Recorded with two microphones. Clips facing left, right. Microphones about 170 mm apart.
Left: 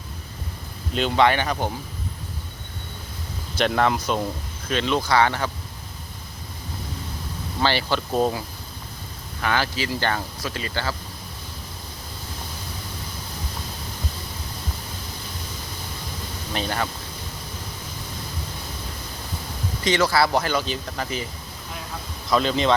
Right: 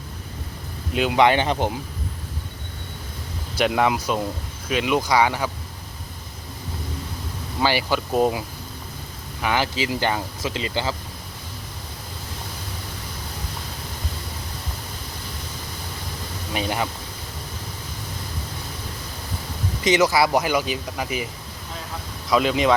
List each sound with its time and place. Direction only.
0.9 s speech: 5° right (ahead or behind)
1.2 s speech: 20° right (ahead or behind)
3.6 s speech: 10° right (ahead or behind)
7.6 s speech: 10° right (ahead or behind)
16.5 s speech: 10° right (ahead or behind)
19.8 s speech: 20° right (ahead or behind)
22.3 s speech: 10° right (ahead or behind)